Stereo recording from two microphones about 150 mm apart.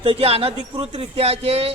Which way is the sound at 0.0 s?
40° right (ahead or behind).